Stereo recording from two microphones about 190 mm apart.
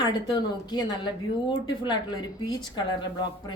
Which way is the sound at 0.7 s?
20° left (ahead or behind).